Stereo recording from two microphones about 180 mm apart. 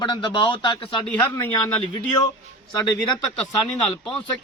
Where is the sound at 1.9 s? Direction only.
20° left (ahead or behind).